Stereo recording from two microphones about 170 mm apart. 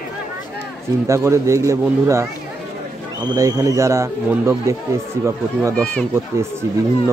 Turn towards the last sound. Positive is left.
turn(degrees=-15)  # may be behind; listen again after turning